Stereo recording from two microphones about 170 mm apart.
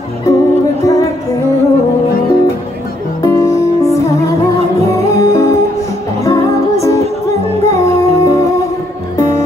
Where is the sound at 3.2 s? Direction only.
20° left (ahead or behind).